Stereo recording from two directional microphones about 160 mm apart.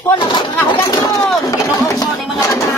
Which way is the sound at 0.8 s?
25° left (ahead or behind).